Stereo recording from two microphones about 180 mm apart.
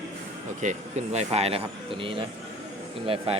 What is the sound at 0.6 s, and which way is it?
A man's voice, 40° right (ahead or behind).